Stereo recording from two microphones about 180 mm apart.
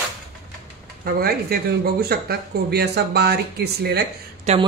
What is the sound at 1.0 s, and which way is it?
Speech, 55° right (ahead or behind).